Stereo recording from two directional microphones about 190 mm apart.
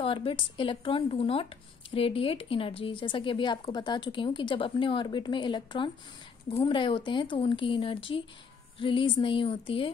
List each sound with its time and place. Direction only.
0.0 s speech: 30° left (ahead or behind)